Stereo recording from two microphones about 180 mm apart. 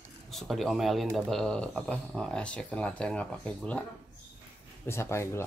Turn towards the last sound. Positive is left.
turn(degrees=15)  # may be behind; listen again after turning